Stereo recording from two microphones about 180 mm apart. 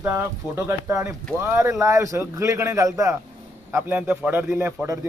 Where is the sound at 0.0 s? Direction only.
15° right (ahead or behind).